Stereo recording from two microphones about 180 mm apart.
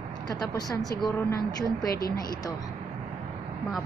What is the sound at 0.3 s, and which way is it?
Speech, 20° left (ahead or behind).